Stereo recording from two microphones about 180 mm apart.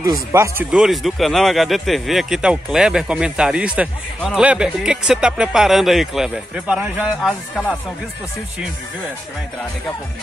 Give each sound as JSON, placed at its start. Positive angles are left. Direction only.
{"t": 0.0, "sound": "speech", "side_deg": -15}
{"t": 0.7, "sound": "speech", "side_deg": 0}